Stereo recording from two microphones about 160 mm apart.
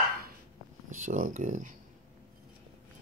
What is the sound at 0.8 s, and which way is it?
Speech, 50° right (ahead or behind).